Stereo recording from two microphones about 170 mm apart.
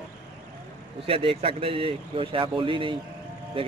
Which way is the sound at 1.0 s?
35° right (ahead or behind).